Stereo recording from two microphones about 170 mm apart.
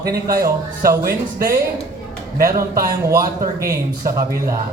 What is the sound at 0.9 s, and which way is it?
Speech, 55° right (ahead or behind).